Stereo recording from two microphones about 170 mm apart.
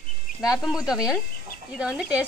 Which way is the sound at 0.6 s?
5° right (ahead or behind).